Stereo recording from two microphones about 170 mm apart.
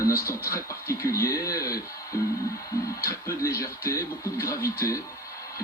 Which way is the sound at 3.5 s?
15° left (ahead or behind).